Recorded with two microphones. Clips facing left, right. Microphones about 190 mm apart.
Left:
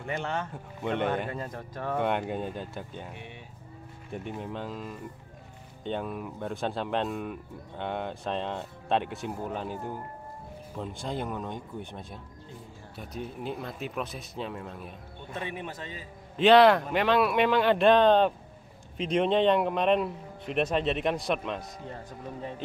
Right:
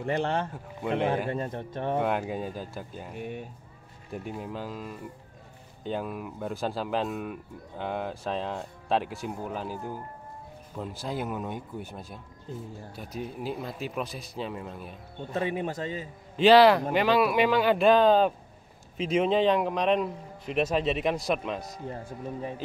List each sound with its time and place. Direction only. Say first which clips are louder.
0.0 s speech: right 5 dB; 35° right (ahead or behind)
0.8 s speech: right 2 dB; 5° right (ahead or behind)
1.3 s speech: right 5 dB; 25° right (ahead or behind)
2.0 s speech: left 1 dB; centre (ahead or behind)
3.2 s speech: right 9 dB; 45° right (ahead or behind)
4.1 s speech: even; centre (ahead or behind)
10.8 s speech: right 1 dB; 5° right (ahead or behind)
15.3 s speech: right 7 dB; 40° right (ahead or behind)
16.3 s speech: right 1 dB; centre (ahead or behind)